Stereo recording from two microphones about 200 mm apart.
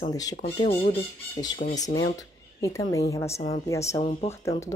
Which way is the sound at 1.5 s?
45° left (ahead or behind).